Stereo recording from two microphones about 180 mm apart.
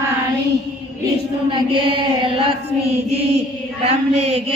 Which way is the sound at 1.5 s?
30° right (ahead or behind).